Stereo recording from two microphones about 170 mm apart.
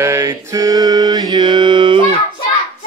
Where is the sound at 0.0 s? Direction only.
15° right (ahead or behind).